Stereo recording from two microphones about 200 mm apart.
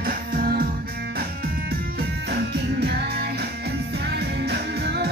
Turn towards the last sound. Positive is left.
turn(degrees=-55)  # may be behind; listen again after turning